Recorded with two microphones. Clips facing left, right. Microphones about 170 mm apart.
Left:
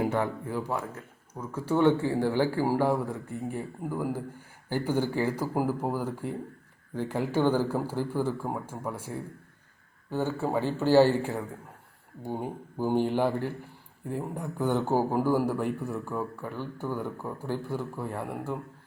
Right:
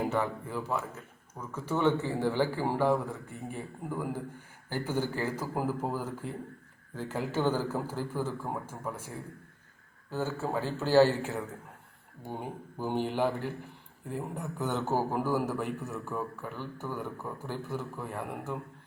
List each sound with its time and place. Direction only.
0.0 s a man's voice: 15° left (ahead or behind)
14.1 s a man's voice: 15° left (ahead or behind)